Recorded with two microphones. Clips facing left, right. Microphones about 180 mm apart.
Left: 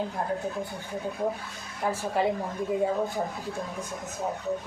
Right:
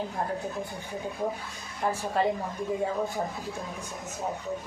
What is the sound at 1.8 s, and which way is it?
Speech, 5° left (ahead or behind).